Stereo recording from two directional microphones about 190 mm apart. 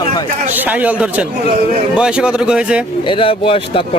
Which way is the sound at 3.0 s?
25° left (ahead or behind).